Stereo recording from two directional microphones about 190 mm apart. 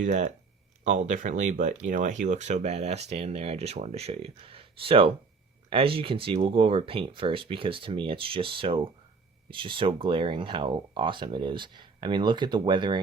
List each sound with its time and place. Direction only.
0.0 s speech: 40° right (ahead or behind); by 13.0 s 25° right (ahead or behind)